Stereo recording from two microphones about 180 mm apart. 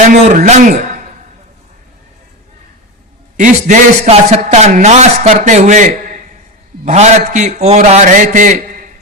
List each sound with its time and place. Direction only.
0.1 s a man's voice: 45° right (ahead or behind)
3.3 s a man's voice: 45° right (ahead or behind)